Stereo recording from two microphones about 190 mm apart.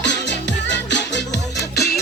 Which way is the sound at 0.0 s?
65° left (ahead or behind).